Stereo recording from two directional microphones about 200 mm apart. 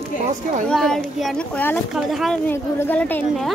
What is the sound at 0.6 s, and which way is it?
A woman's voice, centre (ahead or behind).